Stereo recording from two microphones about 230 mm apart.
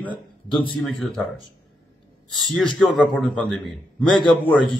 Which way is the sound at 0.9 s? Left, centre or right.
Centre.